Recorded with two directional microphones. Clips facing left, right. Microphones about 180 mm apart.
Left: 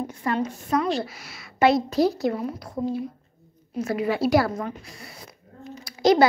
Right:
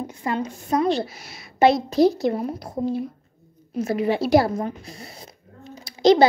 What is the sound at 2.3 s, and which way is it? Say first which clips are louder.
Speech: right 3 dB; 35° right (ahead or behind).